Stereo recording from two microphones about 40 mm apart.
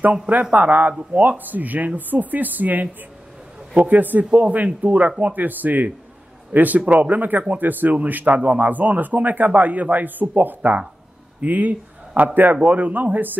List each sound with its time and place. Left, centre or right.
0.3 s a man's voice: right
1.4 s a man's voice: right
4.3 s a man's voice: right